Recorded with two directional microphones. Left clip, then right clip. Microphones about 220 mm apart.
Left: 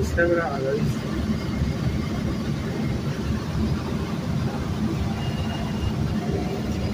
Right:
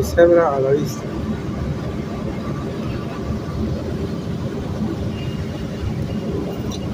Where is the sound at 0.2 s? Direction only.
15° right (ahead or behind).